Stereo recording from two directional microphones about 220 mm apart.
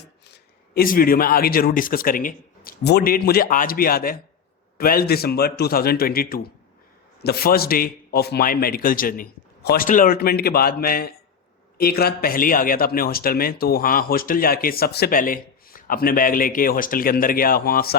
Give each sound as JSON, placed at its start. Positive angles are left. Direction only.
{"t": 0.3, "sound": "a man's voice", "side_deg": 45}